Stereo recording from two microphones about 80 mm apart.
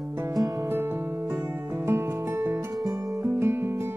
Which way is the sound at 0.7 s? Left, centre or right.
Right.